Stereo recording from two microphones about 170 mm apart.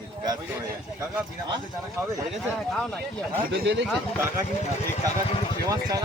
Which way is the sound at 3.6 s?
90° right.